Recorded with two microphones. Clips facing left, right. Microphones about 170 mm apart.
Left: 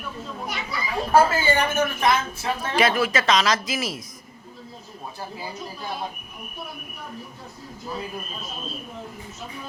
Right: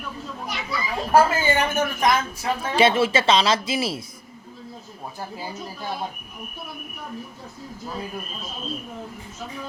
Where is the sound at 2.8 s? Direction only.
25° right (ahead or behind).